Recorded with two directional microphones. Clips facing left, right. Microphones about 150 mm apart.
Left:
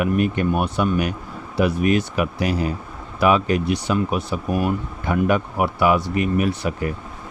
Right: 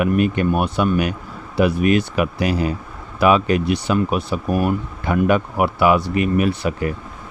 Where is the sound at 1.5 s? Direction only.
70° right (ahead or behind).